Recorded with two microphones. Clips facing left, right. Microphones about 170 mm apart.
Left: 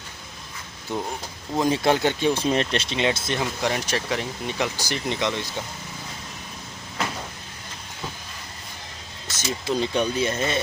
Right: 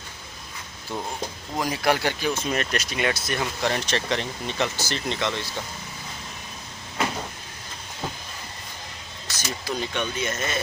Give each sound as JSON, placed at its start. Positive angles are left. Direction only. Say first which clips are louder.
{"t": 0.9, "sound": "speech", "louder": "left 1 dB", "side_deg": 15}
{"t": 3.6, "sound": "speech", "louder": "even", "side_deg": 10}
{"t": 9.6, "sound": "speech", "louder": "left 6 dB", "side_deg": 30}